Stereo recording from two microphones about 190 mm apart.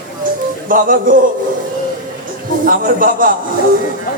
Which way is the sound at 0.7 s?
45° right (ahead or behind).